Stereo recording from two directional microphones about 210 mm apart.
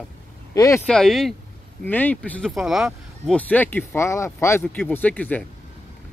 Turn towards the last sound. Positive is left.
turn(degrees=5)  # may be behind; listen again after turning